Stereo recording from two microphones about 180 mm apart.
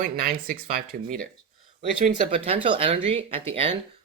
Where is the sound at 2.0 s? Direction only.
30° right (ahead or behind).